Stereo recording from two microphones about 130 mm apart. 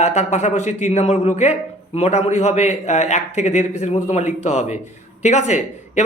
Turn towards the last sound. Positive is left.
turn(degrees=65)  # may be behind; listen again after turning